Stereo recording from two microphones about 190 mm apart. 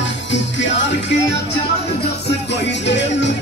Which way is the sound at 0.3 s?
70° left (ahead or behind).